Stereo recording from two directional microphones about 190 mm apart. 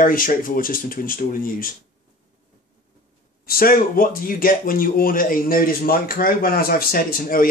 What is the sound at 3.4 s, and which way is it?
Speech, 50° left (ahead or behind).